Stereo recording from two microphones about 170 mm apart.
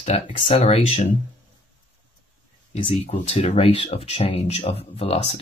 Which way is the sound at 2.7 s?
40° left (ahead or behind).